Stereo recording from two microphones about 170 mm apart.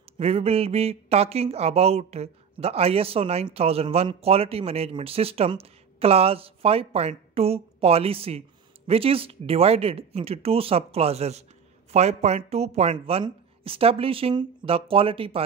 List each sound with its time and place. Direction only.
0.2 s speech: 35° right (ahead or behind)